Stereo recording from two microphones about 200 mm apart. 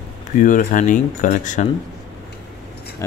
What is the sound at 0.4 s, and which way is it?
Speech, 40° left (ahead or behind).